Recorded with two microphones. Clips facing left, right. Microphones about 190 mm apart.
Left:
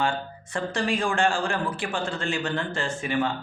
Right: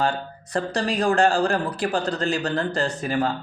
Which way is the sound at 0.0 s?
40° right (ahead or behind).